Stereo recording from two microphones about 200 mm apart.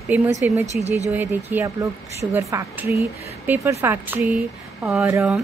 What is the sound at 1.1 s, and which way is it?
A woman's voice, 10° right (ahead or behind).